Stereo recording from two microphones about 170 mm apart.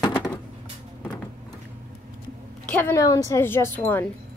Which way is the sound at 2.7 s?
10° left (ahead or behind).